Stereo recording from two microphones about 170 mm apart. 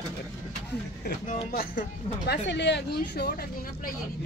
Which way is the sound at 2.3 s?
90° left.